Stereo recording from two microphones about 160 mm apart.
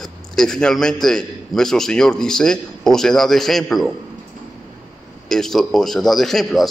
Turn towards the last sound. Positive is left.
turn(degrees=0)  # may be behind; listen again after turning